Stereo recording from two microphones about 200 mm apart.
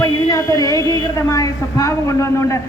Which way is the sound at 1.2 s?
15° left (ahead or behind).